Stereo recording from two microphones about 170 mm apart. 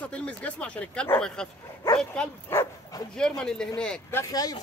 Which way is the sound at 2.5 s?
15° left (ahead or behind).